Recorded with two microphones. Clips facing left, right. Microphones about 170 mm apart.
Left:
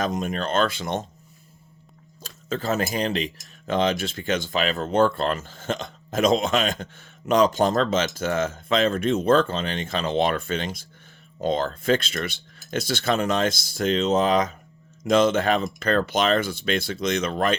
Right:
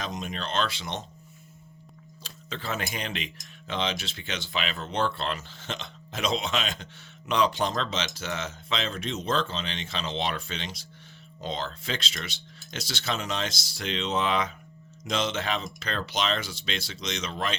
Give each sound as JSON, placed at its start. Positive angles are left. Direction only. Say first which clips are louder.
{"t": 0.0, "sound": "speech", "louder": "left 8 dB", "side_deg": 50}
{"t": 2.2, "sound": "speech", "louder": "left 9 dB", "side_deg": 45}